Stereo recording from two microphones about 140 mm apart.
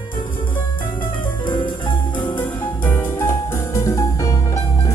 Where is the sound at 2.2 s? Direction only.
15° left (ahead or behind).